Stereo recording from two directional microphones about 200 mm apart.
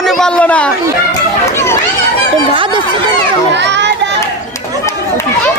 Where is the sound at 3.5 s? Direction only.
60° right (ahead or behind).